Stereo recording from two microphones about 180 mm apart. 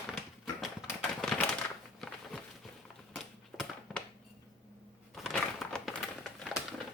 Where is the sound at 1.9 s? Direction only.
Centre (ahead or behind).